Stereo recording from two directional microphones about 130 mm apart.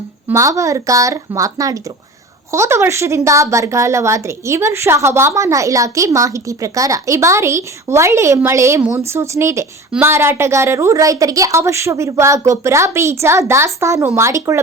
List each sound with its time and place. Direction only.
0.3 s a woman's voice: 25° right (ahead or behind)